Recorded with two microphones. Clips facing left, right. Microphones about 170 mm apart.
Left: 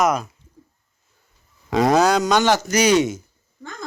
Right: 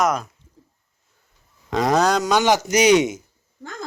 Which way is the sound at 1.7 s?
5° left (ahead or behind).